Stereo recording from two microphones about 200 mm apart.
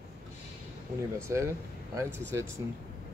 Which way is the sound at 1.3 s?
15° right (ahead or behind).